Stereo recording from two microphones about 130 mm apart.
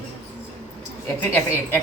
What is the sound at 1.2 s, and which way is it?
Speech, 15° left (ahead or behind).